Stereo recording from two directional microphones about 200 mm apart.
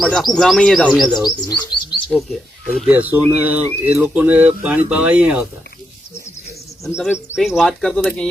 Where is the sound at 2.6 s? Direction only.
Centre (ahead or behind).